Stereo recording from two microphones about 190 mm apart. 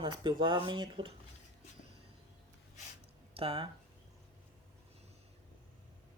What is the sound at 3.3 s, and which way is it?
Speech, 30° right (ahead or behind).